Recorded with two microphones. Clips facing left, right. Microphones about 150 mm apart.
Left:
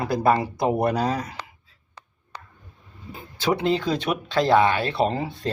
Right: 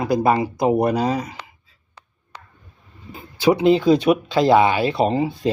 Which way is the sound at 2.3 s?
40° left (ahead or behind).